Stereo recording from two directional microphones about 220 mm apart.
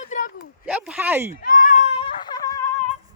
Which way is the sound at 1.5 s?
35° left (ahead or behind).